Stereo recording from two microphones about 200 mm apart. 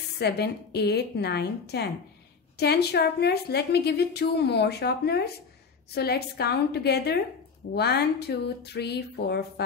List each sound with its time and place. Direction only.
0.2 s a woman's voice: 55° left (ahead or behind)